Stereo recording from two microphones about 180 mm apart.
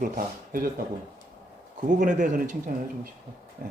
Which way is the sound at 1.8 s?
45° right (ahead or behind).